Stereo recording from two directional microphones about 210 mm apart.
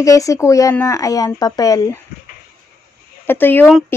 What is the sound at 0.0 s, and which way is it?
Speech, 15° left (ahead or behind).